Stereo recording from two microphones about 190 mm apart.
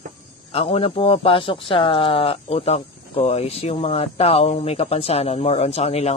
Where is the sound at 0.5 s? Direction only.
30° left (ahead or behind).